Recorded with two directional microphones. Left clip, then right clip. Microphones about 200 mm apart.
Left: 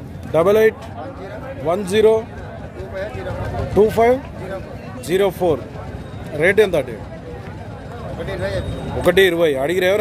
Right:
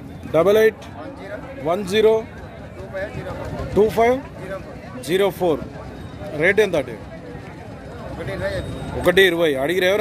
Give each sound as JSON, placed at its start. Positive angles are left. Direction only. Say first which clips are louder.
{"t": 0.3, "sound": "speech", "louder": "left 1 dB", "side_deg": -10}
{"t": 3.7, "sound": "speech", "louder": "left 2 dB", "side_deg": -10}
{"t": 8.3, "sound": "speech", "louder": "left 1 dB", "side_deg": 25}
{"t": 9.0, "sound": "speech", "louder": "left 1 dB", "side_deg": -10}